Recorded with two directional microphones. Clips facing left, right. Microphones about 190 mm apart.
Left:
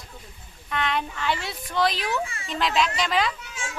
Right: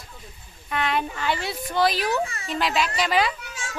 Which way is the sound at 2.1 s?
40° right (ahead or behind).